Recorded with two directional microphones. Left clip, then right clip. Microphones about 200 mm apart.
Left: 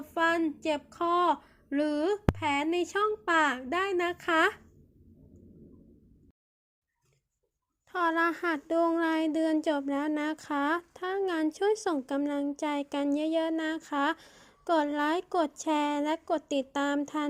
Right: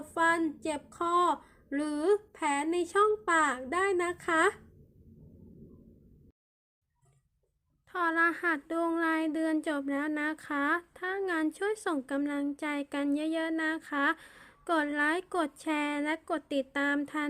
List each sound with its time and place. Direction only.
0.1 s speech: 20° left (ahead or behind)
7.9 s speech: 10° left (ahead or behind)